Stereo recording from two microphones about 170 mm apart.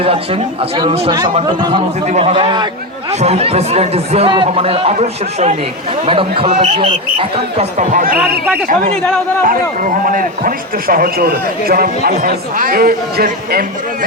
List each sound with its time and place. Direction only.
0.0 s speech: 35° right (ahead or behind)
2.0 s speech: 40° right (ahead or behind)
3.1 s speech: 40° right (ahead or behind); by 13.7 s 65° right (ahead or behind)